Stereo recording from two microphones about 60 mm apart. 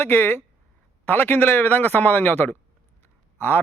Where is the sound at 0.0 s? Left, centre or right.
Left.